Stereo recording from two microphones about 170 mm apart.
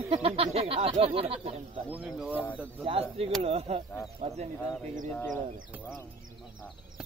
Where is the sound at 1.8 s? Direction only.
5° right (ahead or behind).